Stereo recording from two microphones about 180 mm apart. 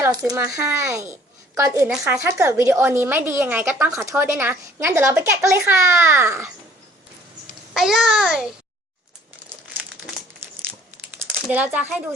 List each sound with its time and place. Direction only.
0.0 s a woman's voice: 15° right (ahead or behind)
7.7 s a child's voice: centre (ahead or behind)
11.4 s a woman's voice: 10° right (ahead or behind)